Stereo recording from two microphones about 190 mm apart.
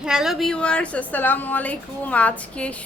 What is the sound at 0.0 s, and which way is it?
A woman's voice, 5° right (ahead or behind).